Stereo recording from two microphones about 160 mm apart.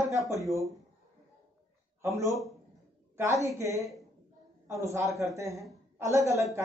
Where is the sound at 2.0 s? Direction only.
20° right (ahead or behind).